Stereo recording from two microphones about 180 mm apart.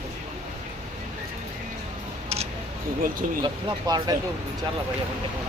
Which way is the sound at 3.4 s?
25° right (ahead or behind).